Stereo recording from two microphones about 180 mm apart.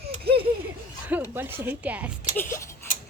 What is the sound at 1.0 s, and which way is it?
Speech, 10° right (ahead or behind).